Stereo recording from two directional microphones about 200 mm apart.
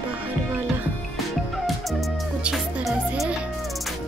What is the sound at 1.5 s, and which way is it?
Music, centre (ahead or behind).